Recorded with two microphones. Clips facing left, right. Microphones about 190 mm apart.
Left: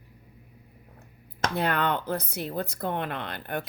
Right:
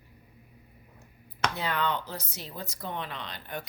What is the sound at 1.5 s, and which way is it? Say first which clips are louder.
Speech: left 6 dB; 55° left (ahead or behind).